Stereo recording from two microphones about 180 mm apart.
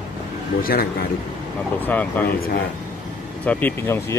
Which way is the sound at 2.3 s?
55° left (ahead or behind).